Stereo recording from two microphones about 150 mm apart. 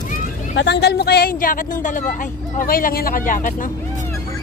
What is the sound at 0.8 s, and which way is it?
Speech, 90° left.